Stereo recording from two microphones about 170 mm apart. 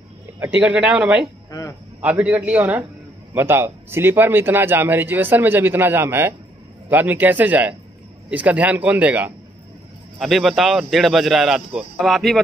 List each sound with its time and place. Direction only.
0.4 s a man's voice: 5° right (ahead or behind)
1.5 s speech: 20° left (ahead or behind)
2.0 s a man's voice: 10° right (ahead or behind)